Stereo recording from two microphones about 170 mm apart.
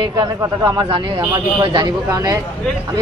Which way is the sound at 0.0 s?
25° right (ahead or behind).